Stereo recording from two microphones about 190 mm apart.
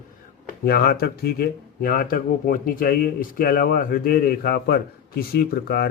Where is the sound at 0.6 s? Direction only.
55° left (ahead or behind).